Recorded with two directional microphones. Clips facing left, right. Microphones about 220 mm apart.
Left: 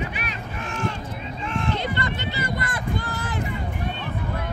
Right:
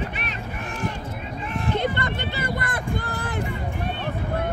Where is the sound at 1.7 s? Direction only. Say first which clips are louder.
Right 2 dB; 55° right (ahead or behind).